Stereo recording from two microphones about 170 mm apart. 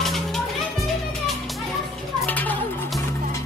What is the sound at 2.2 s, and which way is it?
Music, 10° left (ahead or behind).